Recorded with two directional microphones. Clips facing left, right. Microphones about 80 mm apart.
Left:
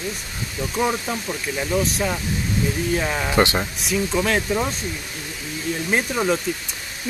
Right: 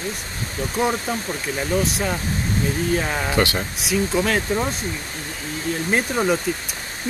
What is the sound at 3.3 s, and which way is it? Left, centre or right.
Speech, left.